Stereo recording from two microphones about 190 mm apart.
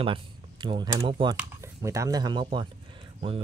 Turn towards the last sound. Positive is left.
turn(degrees=-30)  # may be behind; listen again after turning